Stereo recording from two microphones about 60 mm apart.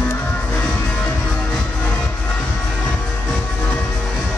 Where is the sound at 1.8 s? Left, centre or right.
Left.